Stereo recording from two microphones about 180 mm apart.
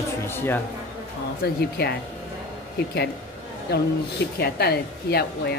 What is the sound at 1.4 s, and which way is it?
Speech, 60° left (ahead or behind).